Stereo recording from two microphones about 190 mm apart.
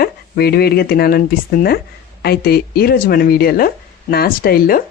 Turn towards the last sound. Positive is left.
turn(degrees=50)  # may be behind; listen again after turning